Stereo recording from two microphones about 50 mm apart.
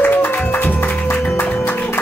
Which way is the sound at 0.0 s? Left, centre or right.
Left.